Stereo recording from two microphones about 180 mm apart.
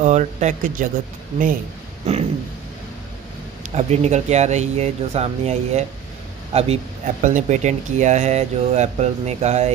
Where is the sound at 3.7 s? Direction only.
40° right (ahead or behind).